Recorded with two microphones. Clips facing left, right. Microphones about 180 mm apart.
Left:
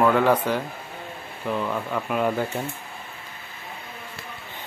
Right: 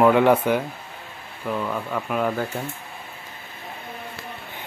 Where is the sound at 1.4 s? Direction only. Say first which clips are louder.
Even; centre (ahead or behind).